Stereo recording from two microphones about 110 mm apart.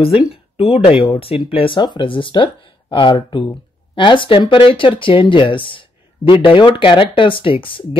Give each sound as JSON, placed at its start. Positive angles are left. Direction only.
{"t": 0.3, "sound": "speech", "side_deg": 60}